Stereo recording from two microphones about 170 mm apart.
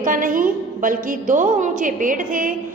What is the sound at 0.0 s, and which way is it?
A woman's voice, 50° right (ahead or behind).